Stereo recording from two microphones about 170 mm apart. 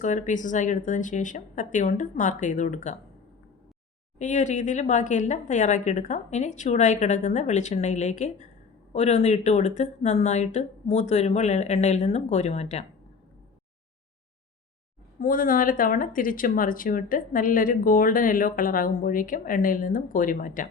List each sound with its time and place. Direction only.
0.0 s speech: 45° left (ahead or behind)
4.2 s speech: 45° left (ahead or behind)
15.2 s speech: 55° left (ahead or behind)